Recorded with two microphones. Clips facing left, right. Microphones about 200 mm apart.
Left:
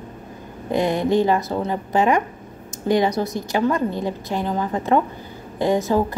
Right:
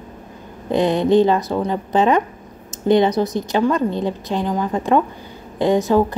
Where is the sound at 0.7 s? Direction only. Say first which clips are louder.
Right 4 dB; 20° right (ahead or behind).